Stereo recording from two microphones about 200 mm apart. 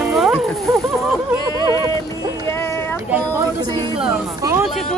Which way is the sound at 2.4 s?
15° left (ahead or behind).